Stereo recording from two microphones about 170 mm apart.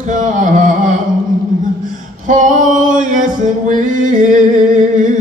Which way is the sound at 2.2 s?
50° right (ahead or behind).